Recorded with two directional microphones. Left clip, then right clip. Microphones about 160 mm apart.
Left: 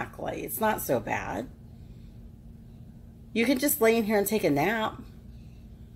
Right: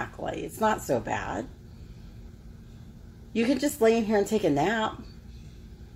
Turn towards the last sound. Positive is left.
turn(degrees=5)  # may be behind; listen again after turning